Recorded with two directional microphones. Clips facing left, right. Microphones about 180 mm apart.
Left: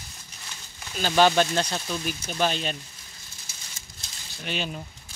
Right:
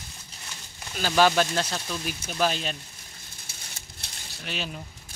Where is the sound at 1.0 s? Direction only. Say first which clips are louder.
Left 1 dB; centre (ahead or behind).